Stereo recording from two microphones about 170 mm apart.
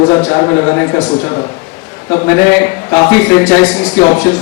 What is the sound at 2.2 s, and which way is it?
A man's voice, 10° left (ahead or behind).